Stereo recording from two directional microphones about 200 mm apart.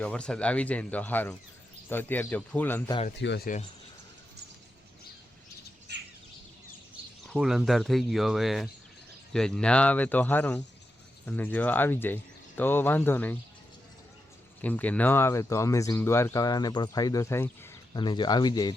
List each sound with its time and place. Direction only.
0.0 s speech: 5° left (ahead or behind)
3.2 s speech: 60° left (ahead or behind)
7.3 s speech: centre (ahead or behind)
14.6 s speech: 10° left (ahead or behind)